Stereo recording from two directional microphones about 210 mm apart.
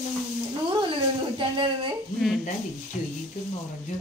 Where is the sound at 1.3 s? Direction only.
25° right (ahead or behind).